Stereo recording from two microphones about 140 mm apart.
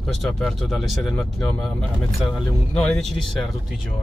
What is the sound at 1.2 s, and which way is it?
Speech, 15° left (ahead or behind).